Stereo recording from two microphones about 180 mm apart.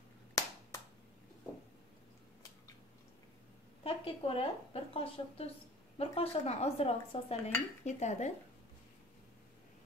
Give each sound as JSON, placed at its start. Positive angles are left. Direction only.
{"t": 0.3, "sound": "finger snapping", "side_deg": 20}
{"t": 3.8, "sound": "a woman's voice", "side_deg": 30}